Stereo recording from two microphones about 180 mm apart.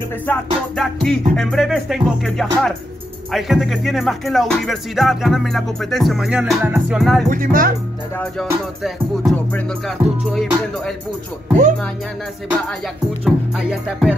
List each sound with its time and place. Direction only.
0.3 s music: 5° left (ahead or behind)
7.2 s speech: 50° right (ahead or behind)
8.8 s music: centre (ahead or behind)
13.2 s music: 5° right (ahead or behind)